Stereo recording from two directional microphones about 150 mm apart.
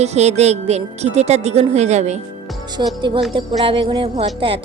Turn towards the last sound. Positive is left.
turn(degrees=-40)  # may be behind; listen again after turning